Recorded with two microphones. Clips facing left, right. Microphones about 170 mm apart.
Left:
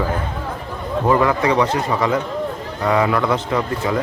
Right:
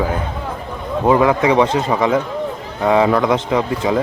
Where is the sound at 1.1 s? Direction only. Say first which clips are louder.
Right 3 dB; 15° right (ahead or behind).